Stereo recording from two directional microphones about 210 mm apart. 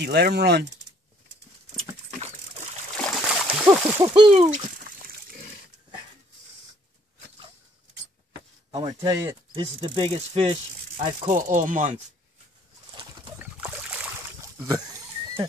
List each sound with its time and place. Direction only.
0.0 s speech: 50° right (ahead or behind)
2.1 s a sound: 30° right (ahead or behind)
3.0 s a sound: 5° left (ahead or behind)
3.6 s speech: 15° right (ahead or behind)
4.8 s pig: 45° right (ahead or behind)
8.7 s speech: 20° right (ahead or behind)
11.0 s speech: 40° right (ahead or behind)
13.4 s boat: 5° right (ahead or behind)
14.4 s boat: 15° right (ahead or behind)